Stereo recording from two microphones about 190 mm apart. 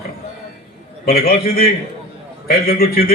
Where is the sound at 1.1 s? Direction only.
50° left (ahead or behind).